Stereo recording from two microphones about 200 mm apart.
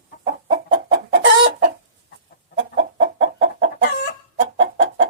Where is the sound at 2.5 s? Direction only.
70° right (ahead or behind).